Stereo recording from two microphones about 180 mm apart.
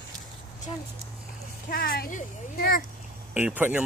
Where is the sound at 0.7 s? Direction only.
30° left (ahead or behind).